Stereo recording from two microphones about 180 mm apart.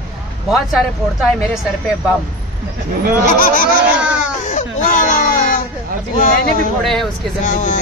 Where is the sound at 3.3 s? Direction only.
50° left (ahead or behind).